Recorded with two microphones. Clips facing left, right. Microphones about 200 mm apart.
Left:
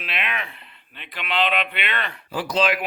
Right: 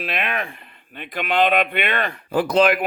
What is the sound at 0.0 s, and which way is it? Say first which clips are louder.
Speech: right 5 dB; 45° right (ahead or behind).